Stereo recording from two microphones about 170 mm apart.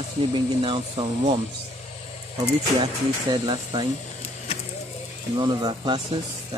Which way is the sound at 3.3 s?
25° right (ahead or behind).